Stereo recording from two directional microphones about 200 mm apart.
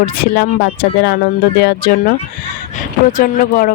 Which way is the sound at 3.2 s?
45° left (ahead or behind).